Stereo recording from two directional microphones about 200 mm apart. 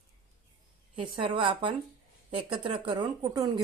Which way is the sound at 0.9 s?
25° right (ahead or behind).